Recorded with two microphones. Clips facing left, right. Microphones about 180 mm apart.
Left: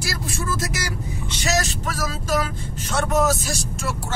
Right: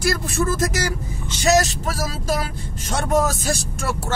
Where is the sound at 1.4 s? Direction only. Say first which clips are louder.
Right 7 dB; 40° right (ahead or behind).